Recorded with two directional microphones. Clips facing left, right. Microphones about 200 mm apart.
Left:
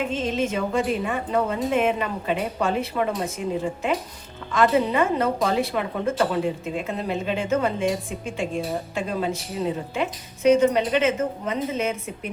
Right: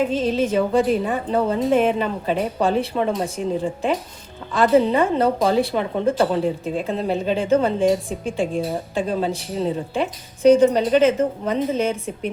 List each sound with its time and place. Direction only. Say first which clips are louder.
0.1 s a woman's voice: right 5 dB; 35° right (ahead or behind)